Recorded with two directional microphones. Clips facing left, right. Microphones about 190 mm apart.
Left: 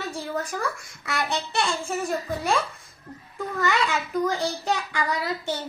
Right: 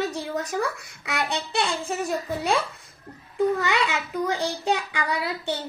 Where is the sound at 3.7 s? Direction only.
15° right (ahead or behind).